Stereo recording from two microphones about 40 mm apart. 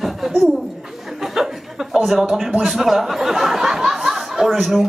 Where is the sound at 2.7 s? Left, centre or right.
Centre.